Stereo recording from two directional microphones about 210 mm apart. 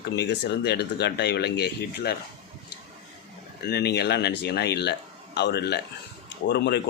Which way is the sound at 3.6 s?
50° left (ahead or behind).